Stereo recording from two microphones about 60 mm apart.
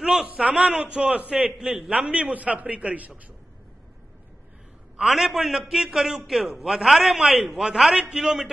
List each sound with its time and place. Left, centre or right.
0.0 s a sound: centre
0.3 s a man's voice: centre
4.9 s a man's voice: centre